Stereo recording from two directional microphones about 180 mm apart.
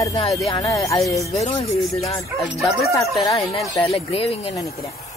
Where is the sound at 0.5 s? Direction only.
25° left (ahead or behind).